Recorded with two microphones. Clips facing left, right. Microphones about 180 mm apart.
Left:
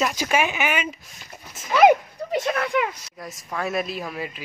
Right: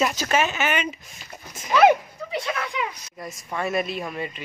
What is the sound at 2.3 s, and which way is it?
Speech, 50° left (ahead or behind).